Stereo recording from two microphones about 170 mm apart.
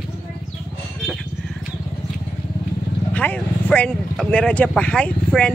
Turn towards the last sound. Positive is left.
turn(degrees=5)  # may be behind; listen again after turning